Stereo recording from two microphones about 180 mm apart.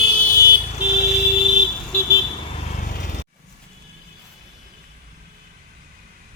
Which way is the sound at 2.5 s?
45° left (ahead or behind).